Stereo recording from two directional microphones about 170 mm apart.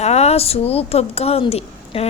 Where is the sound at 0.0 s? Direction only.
40° left (ahead or behind).